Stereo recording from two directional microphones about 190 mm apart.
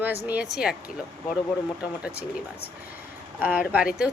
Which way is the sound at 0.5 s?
5° right (ahead or behind).